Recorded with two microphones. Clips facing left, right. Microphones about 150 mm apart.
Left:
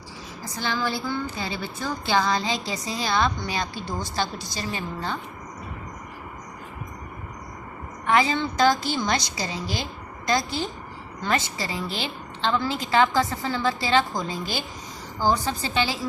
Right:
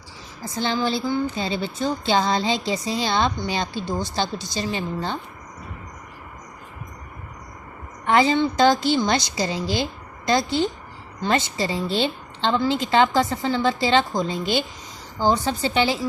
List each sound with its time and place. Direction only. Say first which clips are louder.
0.5 s music: right 4 dB; 25° right (ahead or behind)
8.0 s music: right 4 dB; 30° right (ahead or behind)